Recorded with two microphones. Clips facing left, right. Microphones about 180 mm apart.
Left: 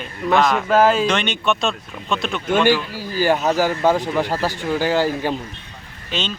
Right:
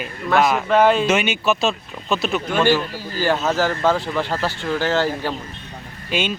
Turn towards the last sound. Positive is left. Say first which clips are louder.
# right 3 dB
turn(degrees=-10)  # may be behind; listen again after turning